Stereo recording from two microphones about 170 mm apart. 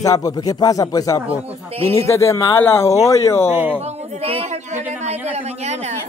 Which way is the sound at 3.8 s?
35° right (ahead or behind).